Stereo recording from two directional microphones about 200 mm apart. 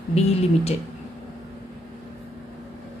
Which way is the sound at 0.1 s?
30° left (ahead or behind).